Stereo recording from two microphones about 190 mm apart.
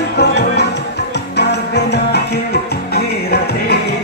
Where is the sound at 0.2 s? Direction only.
60° left (ahead or behind).